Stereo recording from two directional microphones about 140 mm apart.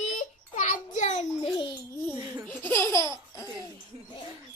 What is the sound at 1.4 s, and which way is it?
Speech, 30° left (ahead or behind).